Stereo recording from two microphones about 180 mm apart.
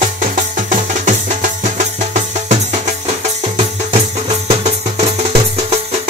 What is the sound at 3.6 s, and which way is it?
Music, 35° right (ahead or behind).